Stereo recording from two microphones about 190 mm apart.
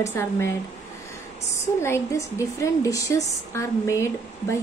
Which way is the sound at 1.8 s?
15° left (ahead or behind).